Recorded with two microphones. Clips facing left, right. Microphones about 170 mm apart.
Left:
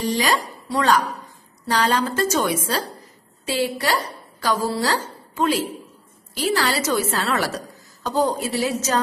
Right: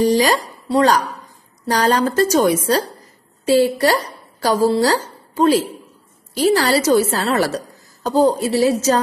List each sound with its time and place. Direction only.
0.0 s a woman's voice: 40° right (ahead or behind)